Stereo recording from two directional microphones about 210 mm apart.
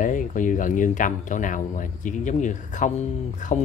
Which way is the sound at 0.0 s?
40° left (ahead or behind).